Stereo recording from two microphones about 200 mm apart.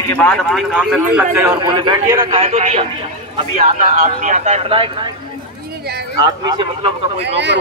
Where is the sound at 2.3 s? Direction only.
35° right (ahead or behind).